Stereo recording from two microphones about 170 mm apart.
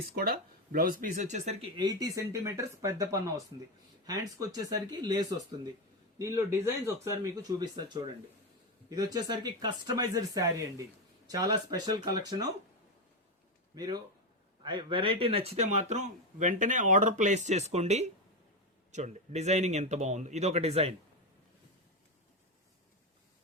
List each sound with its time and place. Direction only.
0.1 s speech: 60° right (ahead or behind); by 1.5 s 45° right (ahead or behind)
1.7 s a man's voice: 25° right (ahead or behind)
13.7 s speech: 25° right (ahead or behind)